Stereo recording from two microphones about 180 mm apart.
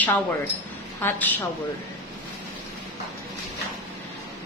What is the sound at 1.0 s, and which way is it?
Speech, 10° left (ahead or behind).